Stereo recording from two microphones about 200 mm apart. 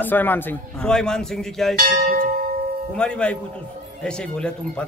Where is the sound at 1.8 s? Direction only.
45° right (ahead or behind).